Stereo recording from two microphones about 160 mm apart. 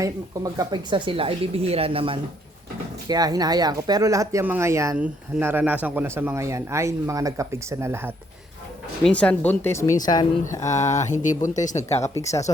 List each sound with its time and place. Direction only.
0.0 s speech: 25° right (ahead or behind)
3.1 s speech: 25° right (ahead or behind)
9.0 s a woman's voice: 5° left (ahead or behind)
10.9 s speech: 50° left (ahead or behind)